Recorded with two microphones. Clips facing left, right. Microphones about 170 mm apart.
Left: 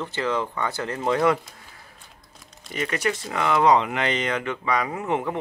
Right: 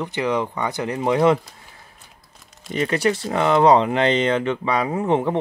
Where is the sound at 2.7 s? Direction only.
30° right (ahead or behind).